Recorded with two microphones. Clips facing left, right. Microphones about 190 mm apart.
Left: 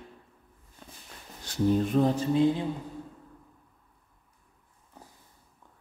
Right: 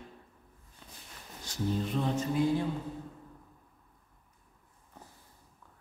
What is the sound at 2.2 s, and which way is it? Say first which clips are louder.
Speech: left 4 dB; 25° left (ahead or behind).